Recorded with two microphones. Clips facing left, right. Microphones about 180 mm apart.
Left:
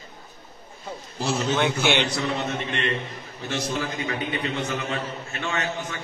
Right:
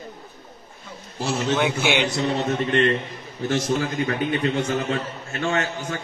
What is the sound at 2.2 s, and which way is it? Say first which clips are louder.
Mantra: right 4 dB; 35° right (ahead or behind).